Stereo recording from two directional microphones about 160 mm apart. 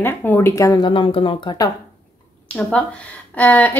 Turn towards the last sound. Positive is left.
turn(degrees=10)  # may be behind; listen again after turning